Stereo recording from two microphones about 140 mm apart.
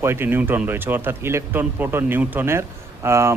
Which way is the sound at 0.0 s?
15° right (ahead or behind).